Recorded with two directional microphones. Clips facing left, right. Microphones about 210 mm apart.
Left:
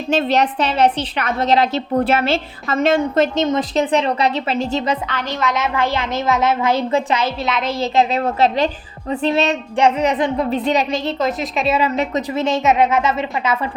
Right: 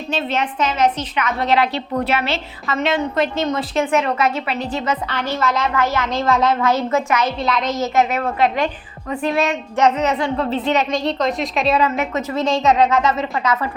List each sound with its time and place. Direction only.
0.1 s a woman's voice: 40° left (ahead or behind)
3.3 s speech: 20° left (ahead or behind)
3.9 s a woman's voice: 35° left (ahead or behind)
6.0 s speech: 20° left (ahead or behind)
6.9 s speech: 30° left (ahead or behind)
7.3 s a woman's voice: centre (ahead or behind)
7.6 s a woman's voice: 30° left (ahead or behind)
9.8 s speech: 15° left (ahead or behind)
10.9 s a woman's voice: 5° left (ahead or behind)
11.8 s speech: 25° left (ahead or behind)